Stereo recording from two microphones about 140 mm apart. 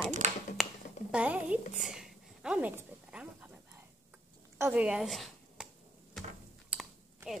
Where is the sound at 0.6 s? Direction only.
Centre (ahead or behind).